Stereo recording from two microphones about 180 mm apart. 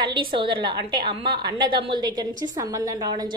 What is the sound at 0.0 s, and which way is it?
A woman's voice, 25° right (ahead or behind).